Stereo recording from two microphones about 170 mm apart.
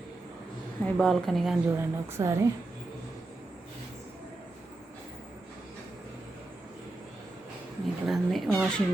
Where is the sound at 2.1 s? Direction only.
15° right (ahead or behind).